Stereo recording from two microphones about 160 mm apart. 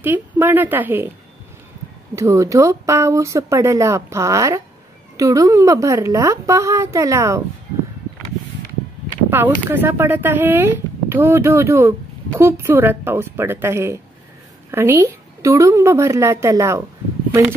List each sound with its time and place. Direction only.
0.0 s speech: 15° right (ahead or behind)
2.1 s speech: 20° right (ahead or behind)
9.3 s speech: 15° right (ahead or behind)